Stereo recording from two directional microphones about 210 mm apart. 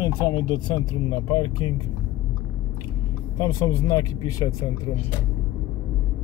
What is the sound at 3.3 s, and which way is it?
Speech, 15° left (ahead or behind).